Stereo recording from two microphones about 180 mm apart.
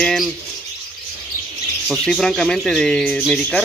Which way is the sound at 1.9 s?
5° left (ahead or behind).